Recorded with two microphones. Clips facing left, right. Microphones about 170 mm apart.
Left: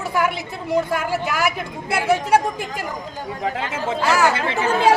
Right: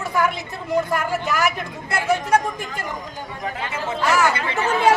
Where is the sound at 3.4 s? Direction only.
90° left.